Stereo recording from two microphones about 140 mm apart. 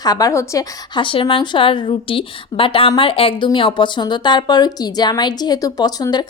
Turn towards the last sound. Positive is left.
turn(degrees=30)  # may be behind; listen again after turning